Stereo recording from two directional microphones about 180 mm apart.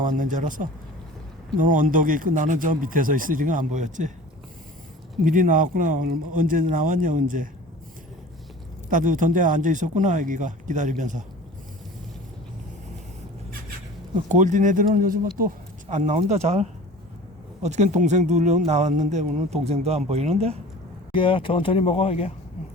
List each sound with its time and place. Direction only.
0.0 s speech: 45° right (ahead or behind)
5.2 s speech: 50° right (ahead or behind)
8.9 s speech: 45° right (ahead or behind)
14.3 s speech: 45° right (ahead or behind)
21.1 s speech: 30° left (ahead or behind)